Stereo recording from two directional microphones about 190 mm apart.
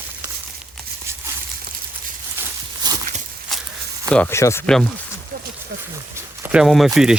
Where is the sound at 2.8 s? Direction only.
20° right (ahead or behind).